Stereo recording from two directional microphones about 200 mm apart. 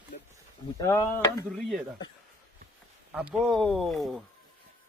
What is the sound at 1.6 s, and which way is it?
Speech, centre (ahead or behind).